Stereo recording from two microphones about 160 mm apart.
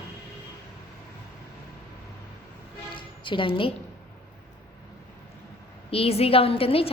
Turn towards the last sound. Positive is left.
turn(degrees=35)  # may be behind; listen again after turning